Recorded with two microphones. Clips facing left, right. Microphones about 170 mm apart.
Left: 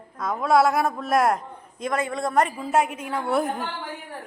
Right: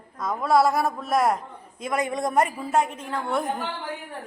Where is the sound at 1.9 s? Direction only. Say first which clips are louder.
Even; 15° right (ahead or behind).